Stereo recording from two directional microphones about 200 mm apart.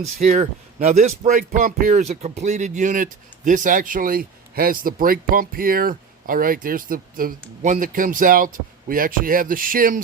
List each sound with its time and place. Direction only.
0.2 s speech: 35° right (ahead or behind)